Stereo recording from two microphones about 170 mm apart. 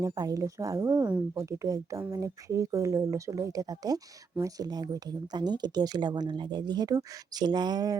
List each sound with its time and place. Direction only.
0.0 s speech: 20° right (ahead or behind)